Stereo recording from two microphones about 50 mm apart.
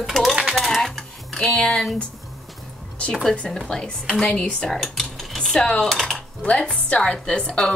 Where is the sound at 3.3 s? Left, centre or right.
Centre.